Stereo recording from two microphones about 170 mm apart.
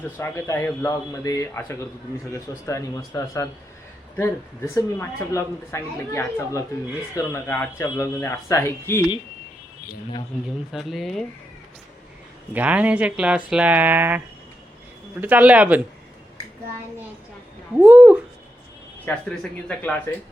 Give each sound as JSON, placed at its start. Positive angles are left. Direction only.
{"t": 0.2, "sound": "speech", "side_deg": 15}
{"t": 10.7, "sound": "speech", "side_deg": 0}
{"t": 12.5, "sound": "speech", "side_deg": -10}
{"t": 15.2, "sound": "speech", "side_deg": -10}
{"t": 17.7, "sound": "speech", "side_deg": -10}
{"t": 19.0, "sound": "speech", "side_deg": 10}